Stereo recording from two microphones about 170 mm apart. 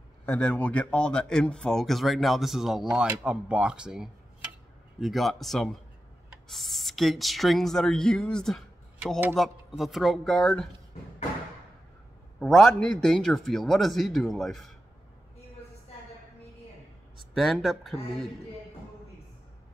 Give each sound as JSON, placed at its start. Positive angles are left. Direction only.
{"t": 0.2, "sound": "speech", "side_deg": 5}
{"t": 12.4, "sound": "speech", "side_deg": 0}
{"t": 17.3, "sound": "speech", "side_deg": 0}